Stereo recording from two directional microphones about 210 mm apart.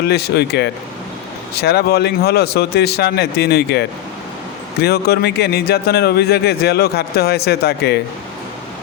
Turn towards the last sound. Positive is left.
turn(degrees=50)  # may be behind; listen again after turning